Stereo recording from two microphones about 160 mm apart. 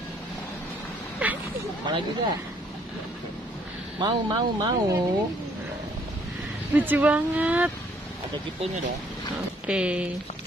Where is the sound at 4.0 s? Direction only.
30° right (ahead or behind).